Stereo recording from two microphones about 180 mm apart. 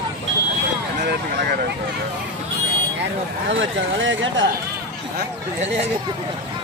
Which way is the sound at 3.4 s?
90° right.